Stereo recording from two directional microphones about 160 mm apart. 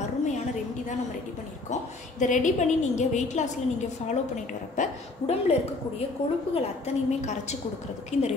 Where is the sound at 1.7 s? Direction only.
50° left (ahead or behind).